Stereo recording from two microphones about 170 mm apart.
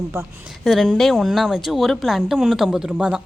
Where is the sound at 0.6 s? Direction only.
Centre (ahead or behind).